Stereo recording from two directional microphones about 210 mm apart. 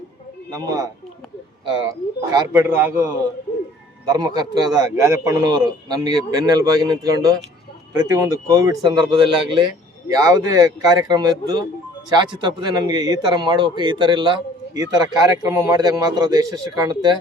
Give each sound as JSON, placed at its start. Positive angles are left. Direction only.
{"t": 0.5, "sound": "a man's voice", "side_deg": -15}